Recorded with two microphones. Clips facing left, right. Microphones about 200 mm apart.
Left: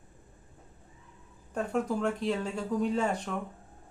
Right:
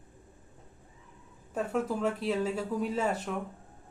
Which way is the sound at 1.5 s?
5° right (ahead or behind).